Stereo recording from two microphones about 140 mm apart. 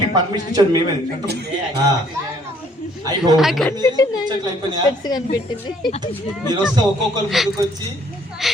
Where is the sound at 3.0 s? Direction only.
30° right (ahead or behind).